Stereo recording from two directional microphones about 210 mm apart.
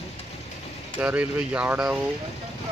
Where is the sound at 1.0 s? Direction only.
5° right (ahead or behind).